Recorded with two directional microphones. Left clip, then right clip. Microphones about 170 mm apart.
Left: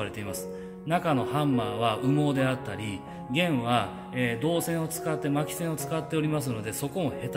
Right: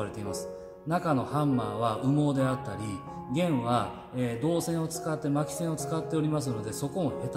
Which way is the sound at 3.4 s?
20° left (ahead or behind).